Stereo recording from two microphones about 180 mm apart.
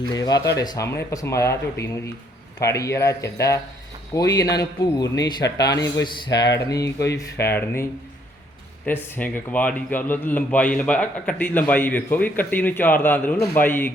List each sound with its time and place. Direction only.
0.1 s a man's voice: 20° left (ahead or behind)
9.1 s a man's voice: 10° left (ahead or behind)